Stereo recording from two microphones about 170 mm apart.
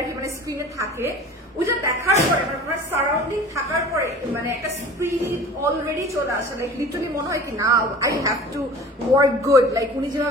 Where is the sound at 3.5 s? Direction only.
15° right (ahead or behind).